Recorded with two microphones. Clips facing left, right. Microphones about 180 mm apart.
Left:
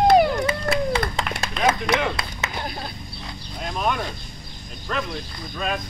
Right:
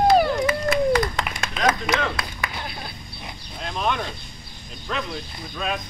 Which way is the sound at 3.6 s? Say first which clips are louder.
Left 1 dB; 5° left (ahead or behind).